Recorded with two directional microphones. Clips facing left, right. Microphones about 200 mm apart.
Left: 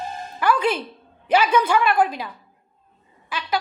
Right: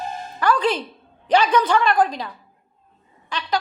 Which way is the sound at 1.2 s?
10° left (ahead or behind).